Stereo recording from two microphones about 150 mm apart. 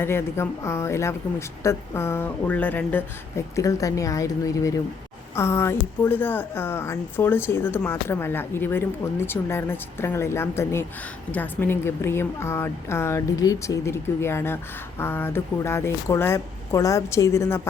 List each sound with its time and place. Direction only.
0.0 s a woman's voice: 15° left (ahead or behind)